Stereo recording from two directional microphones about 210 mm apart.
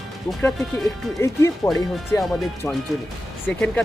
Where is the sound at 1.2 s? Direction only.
15° left (ahead or behind).